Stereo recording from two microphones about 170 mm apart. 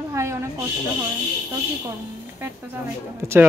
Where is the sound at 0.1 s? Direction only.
15° right (ahead or behind).